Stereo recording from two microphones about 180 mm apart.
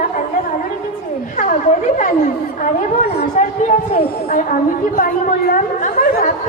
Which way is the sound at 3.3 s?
40° left (ahead or behind).